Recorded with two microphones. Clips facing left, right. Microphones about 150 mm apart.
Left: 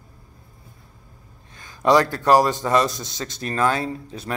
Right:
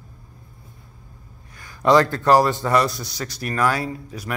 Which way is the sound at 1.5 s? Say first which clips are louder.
Right 1 dB; 20° left (ahead or behind).